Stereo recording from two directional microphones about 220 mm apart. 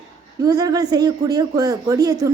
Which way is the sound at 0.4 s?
15° right (ahead or behind).